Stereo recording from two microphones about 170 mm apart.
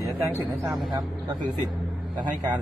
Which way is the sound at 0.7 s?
Centre (ahead or behind).